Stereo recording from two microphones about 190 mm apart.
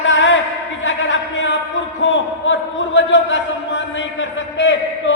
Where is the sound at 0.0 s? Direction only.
80° left.